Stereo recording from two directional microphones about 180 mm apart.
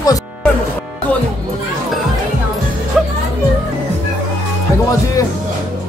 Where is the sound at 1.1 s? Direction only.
10° left (ahead or behind).